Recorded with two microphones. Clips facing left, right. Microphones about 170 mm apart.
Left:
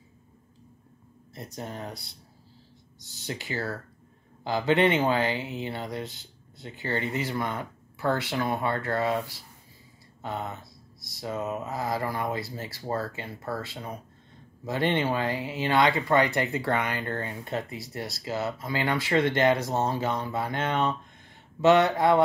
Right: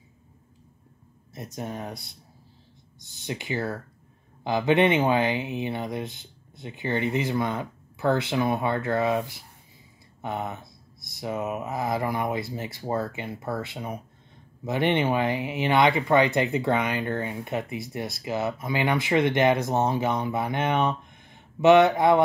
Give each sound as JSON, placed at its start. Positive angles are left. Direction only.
{"t": 1.3, "sound": "speech", "side_deg": -20}
{"t": 3.1, "sound": "speech", "side_deg": -20}